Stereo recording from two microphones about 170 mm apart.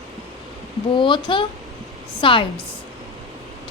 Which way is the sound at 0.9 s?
30° left (ahead or behind).